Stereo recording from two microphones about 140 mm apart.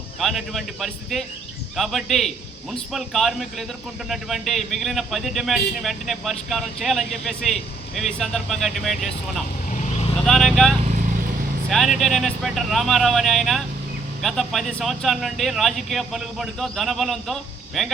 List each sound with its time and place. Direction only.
0.2 s a man's voice: centre (ahead or behind)
9.6 s vehicle: 65° left (ahead or behind)
10.2 s a man's voice: 5° left (ahead or behind)